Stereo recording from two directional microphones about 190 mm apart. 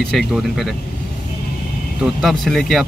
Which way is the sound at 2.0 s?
Centre (ahead or behind).